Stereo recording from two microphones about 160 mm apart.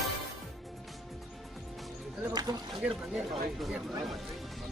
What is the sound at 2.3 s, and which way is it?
Music, 25° right (ahead or behind).